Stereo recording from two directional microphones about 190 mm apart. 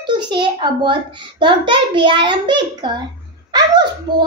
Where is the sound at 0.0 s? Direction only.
25° right (ahead or behind).